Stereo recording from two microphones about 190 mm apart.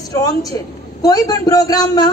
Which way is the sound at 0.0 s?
20° left (ahead or behind).